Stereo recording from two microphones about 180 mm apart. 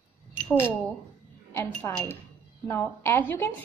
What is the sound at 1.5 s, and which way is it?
A woman's voice, 15° left (ahead or behind).